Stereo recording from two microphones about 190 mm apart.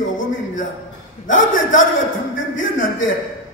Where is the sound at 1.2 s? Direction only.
90° left.